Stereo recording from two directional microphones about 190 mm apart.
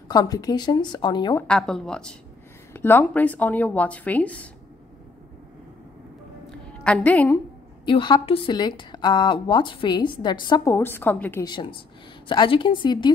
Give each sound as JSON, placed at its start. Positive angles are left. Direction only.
{"t": 0.1, "sound": "a woman's voice", "side_deg": 20}
{"t": 1.5, "sound": "speech", "side_deg": 5}
{"t": 6.5, "sound": "a sound", "side_deg": 5}
{"t": 7.8, "sound": "a woman's voice", "side_deg": 25}
{"t": 11.4, "sound": "a woman's voice", "side_deg": 25}